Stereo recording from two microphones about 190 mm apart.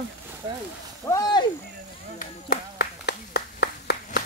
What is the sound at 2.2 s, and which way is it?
Clapping, 55° left (ahead or behind).